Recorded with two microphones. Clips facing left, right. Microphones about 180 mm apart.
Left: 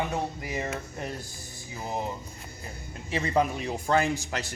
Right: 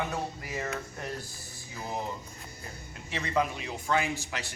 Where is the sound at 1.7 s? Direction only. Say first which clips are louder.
Left 3 dB; 20° left (ahead or behind).